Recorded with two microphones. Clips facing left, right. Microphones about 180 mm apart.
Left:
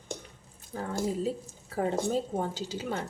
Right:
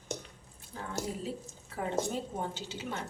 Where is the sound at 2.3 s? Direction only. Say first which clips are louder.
Left 5 dB; 40° left (ahead or behind).